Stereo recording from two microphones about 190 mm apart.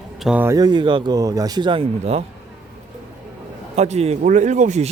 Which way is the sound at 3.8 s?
35° right (ahead or behind).